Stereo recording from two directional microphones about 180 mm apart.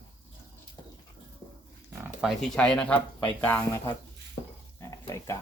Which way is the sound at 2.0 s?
5° right (ahead or behind).